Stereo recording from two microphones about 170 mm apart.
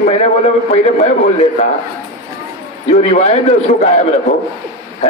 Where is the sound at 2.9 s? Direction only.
40° left (ahead or behind).